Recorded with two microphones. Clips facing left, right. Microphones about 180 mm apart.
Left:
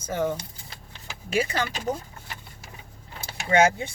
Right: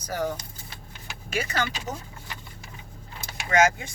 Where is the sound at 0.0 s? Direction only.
25° left (ahead or behind).